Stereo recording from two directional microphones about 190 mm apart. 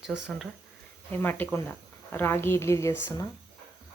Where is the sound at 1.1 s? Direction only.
10° left (ahead or behind).